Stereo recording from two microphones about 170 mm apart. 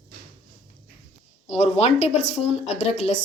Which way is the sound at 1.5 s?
40° left (ahead or behind).